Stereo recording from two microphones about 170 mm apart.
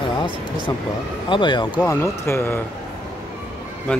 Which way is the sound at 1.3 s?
25° left (ahead or behind).